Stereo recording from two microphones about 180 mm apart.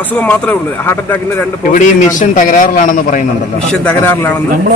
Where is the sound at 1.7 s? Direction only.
45° left (ahead or behind).